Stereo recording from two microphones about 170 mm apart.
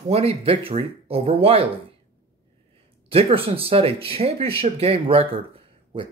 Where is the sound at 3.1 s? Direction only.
35° right (ahead or behind).